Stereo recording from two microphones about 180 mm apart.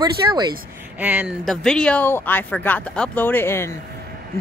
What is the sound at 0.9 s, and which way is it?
Speech, 5° right (ahead or behind).